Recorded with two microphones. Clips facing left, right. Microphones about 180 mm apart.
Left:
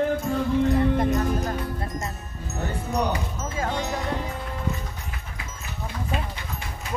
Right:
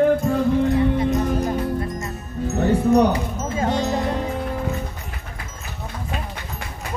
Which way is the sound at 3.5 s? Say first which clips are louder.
Right 7 dB; 20° right (ahead or behind).